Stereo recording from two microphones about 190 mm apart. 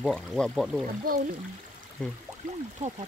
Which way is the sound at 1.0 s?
50° right (ahead or behind).